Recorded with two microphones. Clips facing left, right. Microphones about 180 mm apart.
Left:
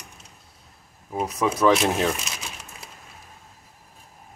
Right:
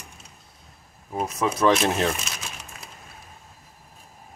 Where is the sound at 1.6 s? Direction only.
10° left (ahead or behind).